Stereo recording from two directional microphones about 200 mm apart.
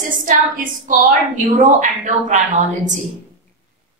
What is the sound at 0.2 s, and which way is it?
A woman's voice, 45° right (ahead or behind).